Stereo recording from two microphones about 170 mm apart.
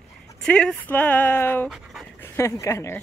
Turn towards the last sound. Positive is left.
turn(degrees=15)  # may be behind; listen again after turning